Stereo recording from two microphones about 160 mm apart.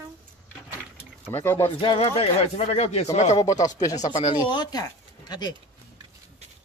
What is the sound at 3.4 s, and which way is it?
Speech, 20° left (ahead or behind).